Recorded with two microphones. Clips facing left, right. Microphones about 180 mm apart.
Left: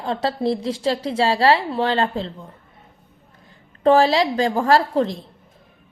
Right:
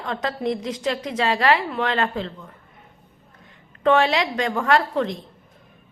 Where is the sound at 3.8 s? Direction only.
35° left (ahead or behind).